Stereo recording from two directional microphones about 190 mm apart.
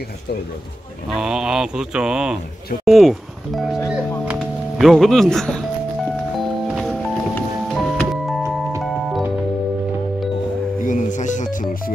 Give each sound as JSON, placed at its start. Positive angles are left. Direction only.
{"t": 1.1, "sound": "mantra", "side_deg": -5}
{"t": 2.8, "sound": "speech", "side_deg": 0}
{"t": 4.3, "sound": "music", "side_deg": 0}
{"t": 6.7, "sound": "music", "side_deg": -5}
{"t": 10.8, "sound": "music", "side_deg": 40}